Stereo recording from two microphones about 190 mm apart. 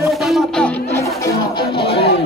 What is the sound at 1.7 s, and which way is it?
Speech, 30° left (ahead or behind).